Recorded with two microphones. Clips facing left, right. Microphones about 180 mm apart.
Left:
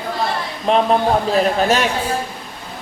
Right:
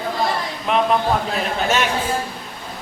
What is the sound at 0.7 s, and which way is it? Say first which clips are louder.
Speech: left 4 dB; 30° left (ahead or behind).